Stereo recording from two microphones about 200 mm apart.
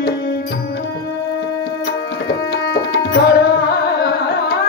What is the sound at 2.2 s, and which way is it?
Tabla, 55° left (ahead or behind).